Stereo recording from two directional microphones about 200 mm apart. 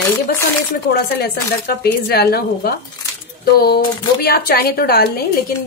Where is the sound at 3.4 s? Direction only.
50° left (ahead or behind).